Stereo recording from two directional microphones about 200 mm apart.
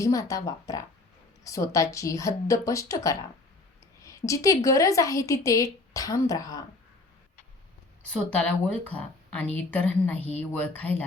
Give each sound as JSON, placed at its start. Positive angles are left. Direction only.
{"t": 0.0, "sound": "a woman's voice", "side_deg": 15}
{"t": 4.3, "sound": "a woman's voice", "side_deg": 15}
{"t": 8.1, "sound": "a woman's voice", "side_deg": 5}
{"t": 10.2, "sound": "speech", "side_deg": -30}
{"t": 10.8, "sound": "a woman's voice", "side_deg": 10}